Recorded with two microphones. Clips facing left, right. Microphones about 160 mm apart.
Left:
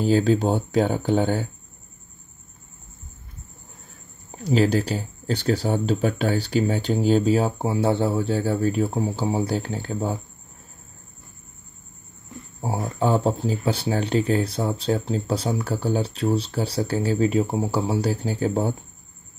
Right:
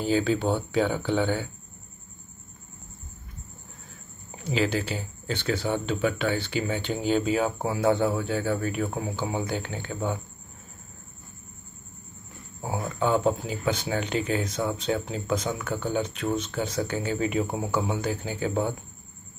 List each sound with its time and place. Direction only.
0.0 s speech: 40° left (ahead or behind)
4.4 s speech: 40° left (ahead or behind)
12.6 s speech: 35° left (ahead or behind)